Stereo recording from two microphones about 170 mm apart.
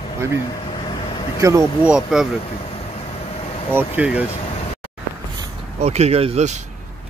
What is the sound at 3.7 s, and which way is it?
Speech, 10° right (ahead or behind).